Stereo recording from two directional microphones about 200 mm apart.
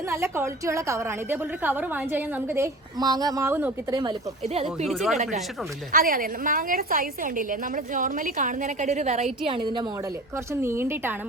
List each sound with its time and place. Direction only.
0.1 s a woman's voice: 15° right (ahead or behind)
4.4 s a woman's voice: 30° right (ahead or behind)
4.9 s speech: centre (ahead or behind)
5.1 s a woman's voice: 35° right (ahead or behind); by 11.2 s 10° right (ahead or behind)